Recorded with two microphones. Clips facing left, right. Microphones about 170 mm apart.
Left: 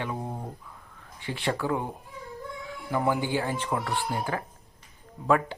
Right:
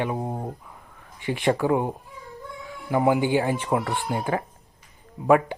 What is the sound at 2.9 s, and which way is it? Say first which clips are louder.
Speech: right 6 dB; 15° right (ahead or behind).